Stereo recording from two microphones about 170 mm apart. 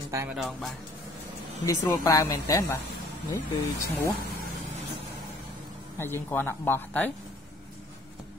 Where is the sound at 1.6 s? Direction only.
20° left (ahead or behind).